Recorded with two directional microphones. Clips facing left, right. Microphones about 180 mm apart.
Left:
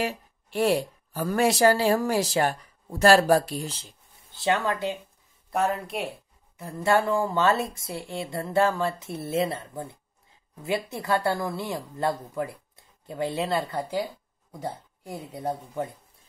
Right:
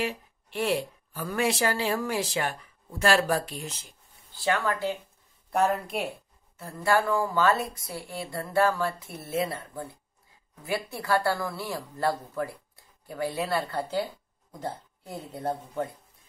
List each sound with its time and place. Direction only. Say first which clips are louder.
0.0 s speech: left 2 dB; 40° left (ahead or behind); by 4.9 s 20° left (ahead or behind)
5.5 s speech: right 1 dB; centre (ahead or behind)
6.6 s speech: left 2 dB; 25° left (ahead or behind)